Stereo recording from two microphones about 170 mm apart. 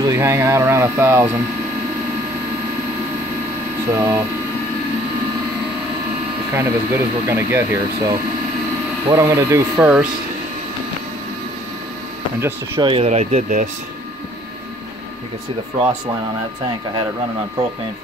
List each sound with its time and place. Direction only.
0.0 s speech: 15° right (ahead or behind)
3.9 s speech: 20° right (ahead or behind)
6.5 s speech: 15° right (ahead or behind)
12.4 s speech: 15° right (ahead or behind)
12.8 s speech: 35° right (ahead or behind)